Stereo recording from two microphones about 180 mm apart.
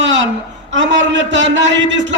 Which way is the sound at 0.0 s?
90° right.